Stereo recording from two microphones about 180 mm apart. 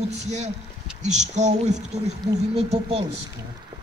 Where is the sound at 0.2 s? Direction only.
40° right (ahead or behind).